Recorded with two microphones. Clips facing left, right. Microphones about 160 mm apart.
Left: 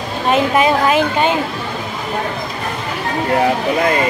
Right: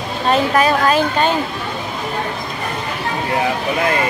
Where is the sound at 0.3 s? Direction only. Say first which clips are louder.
Left 1 dB; 15° left (ahead or behind).